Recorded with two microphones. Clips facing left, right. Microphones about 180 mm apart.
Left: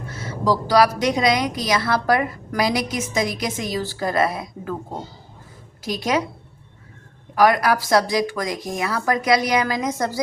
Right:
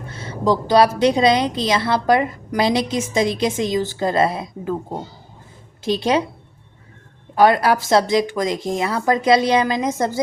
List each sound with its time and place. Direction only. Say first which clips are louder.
0.1 s a woman's voice: right 2 dB; 30° right (ahead or behind)
7.3 s a woman's voice: right 2 dB; 25° right (ahead or behind)